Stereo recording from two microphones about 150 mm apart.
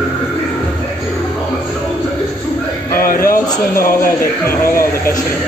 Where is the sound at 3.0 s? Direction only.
75° left (ahead or behind).